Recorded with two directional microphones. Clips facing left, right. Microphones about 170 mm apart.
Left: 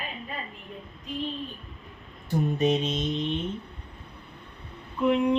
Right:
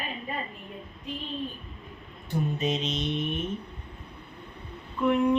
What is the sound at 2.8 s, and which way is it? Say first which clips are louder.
Mantra: left 2 dB; 50° left (ahead or behind).